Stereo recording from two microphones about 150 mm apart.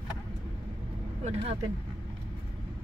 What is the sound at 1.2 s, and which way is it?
Vehicle, 45° right (ahead or behind).